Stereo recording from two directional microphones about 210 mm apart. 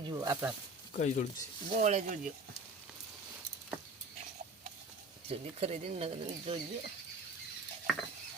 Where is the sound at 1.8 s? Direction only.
35° right (ahead or behind).